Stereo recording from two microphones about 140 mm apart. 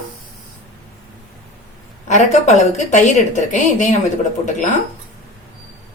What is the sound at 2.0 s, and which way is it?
A woman's voice, 55° left (ahead or behind).